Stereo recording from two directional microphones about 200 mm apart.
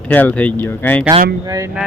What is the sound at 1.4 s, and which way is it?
Speech, 15° right (ahead or behind).